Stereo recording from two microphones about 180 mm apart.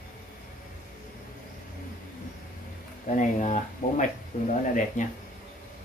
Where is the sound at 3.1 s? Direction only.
45° left (ahead or behind).